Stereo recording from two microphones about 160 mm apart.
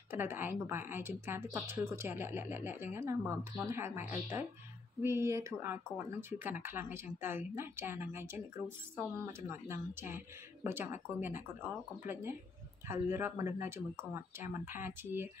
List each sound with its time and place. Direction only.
0.1 s a woman's voice: 15° right (ahead or behind)